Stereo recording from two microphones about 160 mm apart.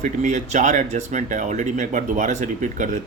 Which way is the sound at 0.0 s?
50° right (ahead or behind).